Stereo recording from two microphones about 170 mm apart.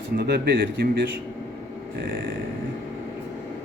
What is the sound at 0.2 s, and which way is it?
Speech, 65° right (ahead or behind).